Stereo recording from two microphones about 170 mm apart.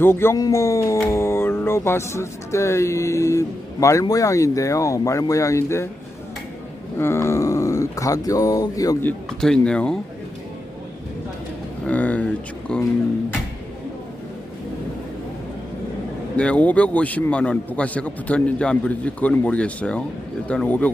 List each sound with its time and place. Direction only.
0.0 s speech: 15° left (ahead or behind)
7.0 s speech: 15° left (ahead or behind)
9.0 s speech: 5° left (ahead or behind)
11.9 s speech: 10° left (ahead or behind)
16.4 s speech: 5° left (ahead or behind)